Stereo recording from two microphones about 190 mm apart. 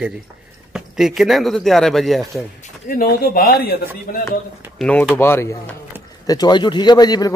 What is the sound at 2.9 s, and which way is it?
A man's voice, 50° left (ahead or behind).